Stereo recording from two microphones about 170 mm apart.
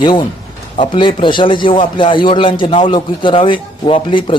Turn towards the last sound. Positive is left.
turn(degrees=30)  # may be behind; listen again after turning